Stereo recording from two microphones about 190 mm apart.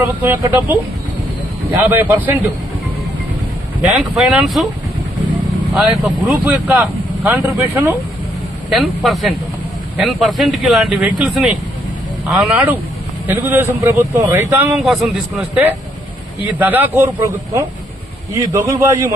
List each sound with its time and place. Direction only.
0.0 s speech: 10° right (ahead or behind)
4.2 s speech: 5° right (ahead or behind)
5.7 s speech: centre (ahead or behind)
8.7 s speech: centre (ahead or behind); by 19.1 s 15° right (ahead or behind)